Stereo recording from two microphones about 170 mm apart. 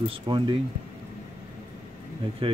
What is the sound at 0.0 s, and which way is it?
Speech, 30° right (ahead or behind).